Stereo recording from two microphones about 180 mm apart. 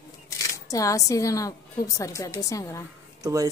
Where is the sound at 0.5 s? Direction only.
20° left (ahead or behind).